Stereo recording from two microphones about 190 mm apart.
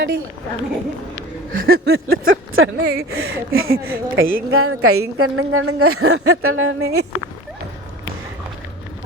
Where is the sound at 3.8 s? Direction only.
90° right.